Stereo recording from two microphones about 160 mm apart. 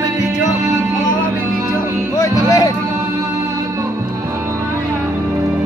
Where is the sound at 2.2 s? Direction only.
20° left (ahead or behind).